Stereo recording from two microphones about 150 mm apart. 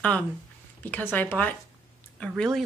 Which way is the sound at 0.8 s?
10° left (ahead or behind).